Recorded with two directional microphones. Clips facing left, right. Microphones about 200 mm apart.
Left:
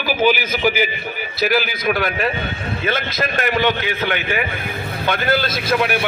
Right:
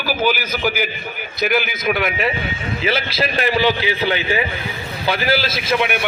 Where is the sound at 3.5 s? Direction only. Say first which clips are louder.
Right 1 dB; 10° right (ahead or behind).